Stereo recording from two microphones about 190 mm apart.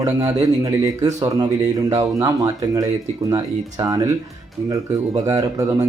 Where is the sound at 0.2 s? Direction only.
20° right (ahead or behind).